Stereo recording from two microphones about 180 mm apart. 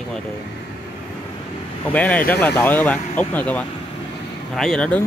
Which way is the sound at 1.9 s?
10° left (ahead or behind).